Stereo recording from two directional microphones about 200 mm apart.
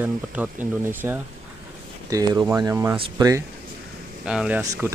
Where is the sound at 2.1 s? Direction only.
15° right (ahead or behind).